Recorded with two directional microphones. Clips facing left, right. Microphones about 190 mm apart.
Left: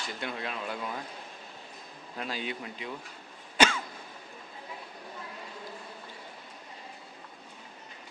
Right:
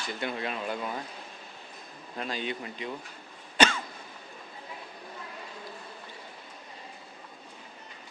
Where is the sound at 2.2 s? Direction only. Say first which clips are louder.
Right 2 dB; 5° left (ahead or behind).